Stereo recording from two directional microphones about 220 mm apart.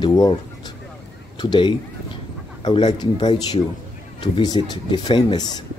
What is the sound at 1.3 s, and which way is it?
Speech, 20° left (ahead or behind).